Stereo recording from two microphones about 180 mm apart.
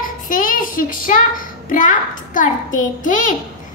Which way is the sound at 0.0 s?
50° left (ahead or behind).